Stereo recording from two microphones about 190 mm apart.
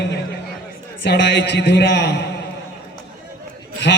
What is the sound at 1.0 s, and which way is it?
A man's voice, 65° left (ahead or behind).